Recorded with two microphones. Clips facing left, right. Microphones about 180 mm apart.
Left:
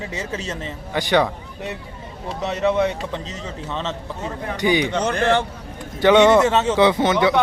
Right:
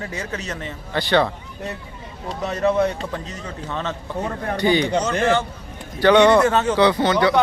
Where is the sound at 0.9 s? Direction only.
15° left (ahead or behind).